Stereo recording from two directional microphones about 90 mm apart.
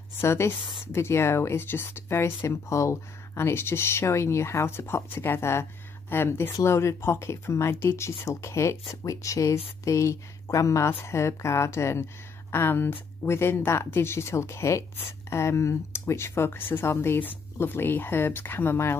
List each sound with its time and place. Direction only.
0.2 s speech: 30° left (ahead or behind)